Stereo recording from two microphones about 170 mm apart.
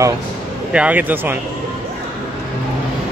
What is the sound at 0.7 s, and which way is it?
Speech, 10° right (ahead or behind).